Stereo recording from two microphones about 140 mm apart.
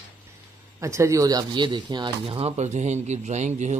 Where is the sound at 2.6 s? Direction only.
55° right (ahead or behind).